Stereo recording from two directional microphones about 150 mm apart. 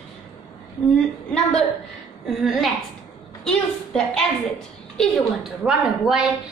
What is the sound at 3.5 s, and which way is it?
A woman's voice, 5° left (ahead or behind).